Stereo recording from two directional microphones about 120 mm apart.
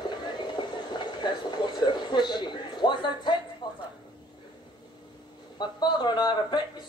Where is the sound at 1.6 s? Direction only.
40° left (ahead or behind).